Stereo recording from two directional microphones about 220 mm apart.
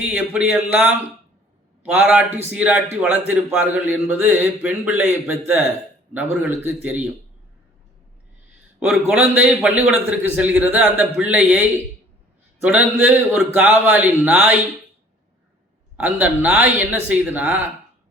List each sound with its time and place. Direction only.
0.0 s speech: 5° right (ahead or behind)
8.9 s speech: 5° right (ahead or behind)
16.0 s speech: 5° right (ahead or behind)